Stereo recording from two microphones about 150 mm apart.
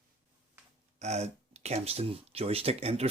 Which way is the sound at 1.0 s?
45° right (ahead or behind).